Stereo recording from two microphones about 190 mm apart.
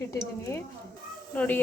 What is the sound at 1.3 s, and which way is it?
Speech, 10° left (ahead or behind).